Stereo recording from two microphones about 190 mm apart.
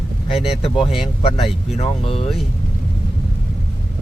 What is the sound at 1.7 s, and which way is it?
Speech, 30° left (ahead or behind).